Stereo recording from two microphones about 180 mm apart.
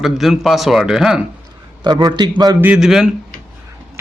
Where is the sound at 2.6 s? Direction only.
5° right (ahead or behind).